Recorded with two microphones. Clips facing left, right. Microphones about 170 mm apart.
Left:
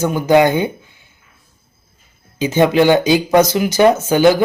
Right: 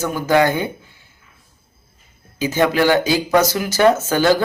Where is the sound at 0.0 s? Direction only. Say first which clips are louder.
Left 4 dB; 20° left (ahead or behind).